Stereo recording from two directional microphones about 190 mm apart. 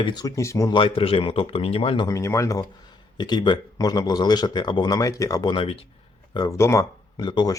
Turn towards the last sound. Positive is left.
turn(degrees=25)  # may be behind; listen again after turning